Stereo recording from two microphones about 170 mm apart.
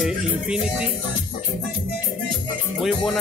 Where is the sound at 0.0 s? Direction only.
5° right (ahead or behind).